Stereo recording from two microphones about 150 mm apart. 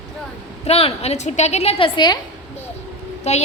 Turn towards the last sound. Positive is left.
turn(degrees=45)  # may be behind; listen again after turning